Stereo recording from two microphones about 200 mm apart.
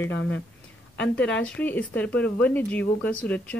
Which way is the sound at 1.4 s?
10° left (ahead or behind).